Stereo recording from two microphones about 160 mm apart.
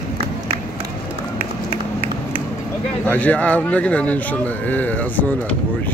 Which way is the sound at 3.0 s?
10° left (ahead or behind).